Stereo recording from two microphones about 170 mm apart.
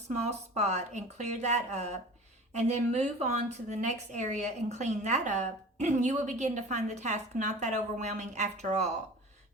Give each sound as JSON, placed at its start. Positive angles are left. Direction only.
{"t": 0.5, "sound": "a woman's voice", "side_deg": -40}